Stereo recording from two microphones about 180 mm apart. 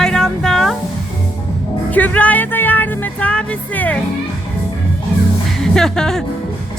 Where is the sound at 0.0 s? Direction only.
5° left (ahead or behind).